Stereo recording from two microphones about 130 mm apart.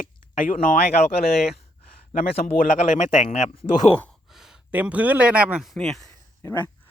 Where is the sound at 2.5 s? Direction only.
70° left (ahead or behind).